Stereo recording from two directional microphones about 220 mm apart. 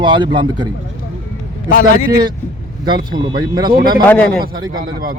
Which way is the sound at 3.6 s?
40° right (ahead or behind).